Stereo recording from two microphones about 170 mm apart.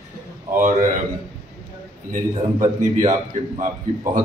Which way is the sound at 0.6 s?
50° right (ahead or behind).